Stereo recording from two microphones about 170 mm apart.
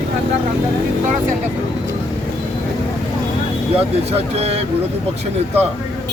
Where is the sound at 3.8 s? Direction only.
35° right (ahead or behind).